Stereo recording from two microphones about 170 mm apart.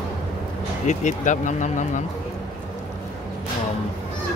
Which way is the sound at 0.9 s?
45° left (ahead or behind).